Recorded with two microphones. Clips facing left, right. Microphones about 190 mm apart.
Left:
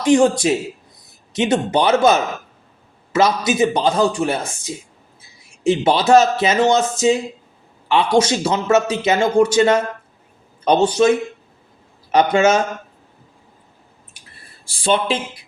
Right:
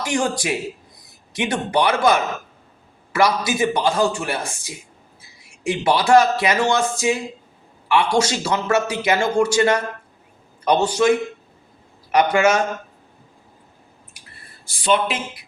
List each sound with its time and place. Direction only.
0.0 s a man's voice: 25° left (ahead or behind)
12.1 s a man's voice: 25° left (ahead or behind)
14.6 s speech: 30° left (ahead or behind)